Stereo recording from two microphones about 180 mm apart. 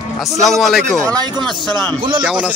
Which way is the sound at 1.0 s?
20° right (ahead or behind).